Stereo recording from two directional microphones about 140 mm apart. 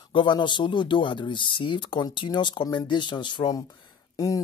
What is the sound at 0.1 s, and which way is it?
Speech, 35° left (ahead or behind).